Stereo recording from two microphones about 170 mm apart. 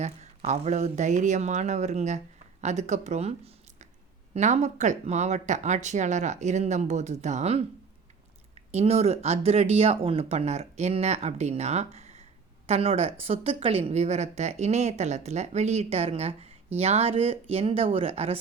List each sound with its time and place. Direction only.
0.0 s speech: 40° right (ahead or behind)
8.7 s a woman's voice: 35° right (ahead or behind)